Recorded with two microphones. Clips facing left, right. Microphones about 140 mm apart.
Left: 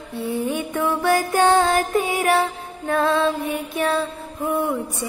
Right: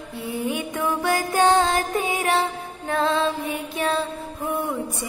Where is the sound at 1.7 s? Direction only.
25° right (ahead or behind).